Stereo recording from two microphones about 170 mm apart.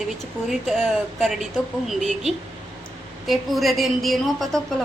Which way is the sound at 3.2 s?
Centre (ahead or behind).